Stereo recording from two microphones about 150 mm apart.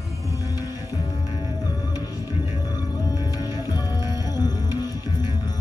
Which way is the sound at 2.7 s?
25° left (ahead or behind).